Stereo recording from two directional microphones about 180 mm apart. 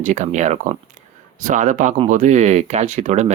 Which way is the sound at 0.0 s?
40° right (ahead or behind).